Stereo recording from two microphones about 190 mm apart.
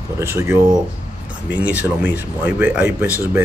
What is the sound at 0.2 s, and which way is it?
Speech, 15° right (ahead or behind).